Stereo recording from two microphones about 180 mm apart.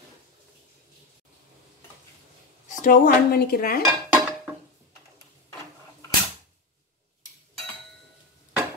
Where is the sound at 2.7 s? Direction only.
50° left (ahead or behind).